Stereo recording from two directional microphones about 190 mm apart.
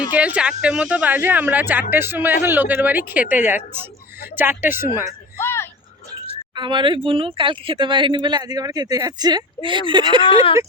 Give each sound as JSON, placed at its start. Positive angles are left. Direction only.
{"t": 0.1, "sound": "speech", "side_deg": -5}
{"t": 5.4, "sound": "a sound", "side_deg": 15}
{"t": 6.6, "sound": "speech", "side_deg": -25}